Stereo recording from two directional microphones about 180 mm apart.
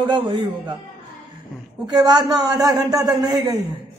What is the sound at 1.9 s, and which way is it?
A man's voice, 20° right (ahead or behind).